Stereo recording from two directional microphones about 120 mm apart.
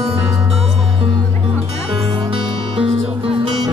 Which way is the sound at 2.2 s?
45° right (ahead or behind).